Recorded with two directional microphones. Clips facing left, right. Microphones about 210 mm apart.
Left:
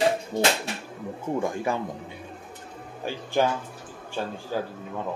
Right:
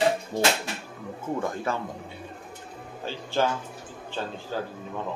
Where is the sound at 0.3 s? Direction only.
Centre (ahead or behind).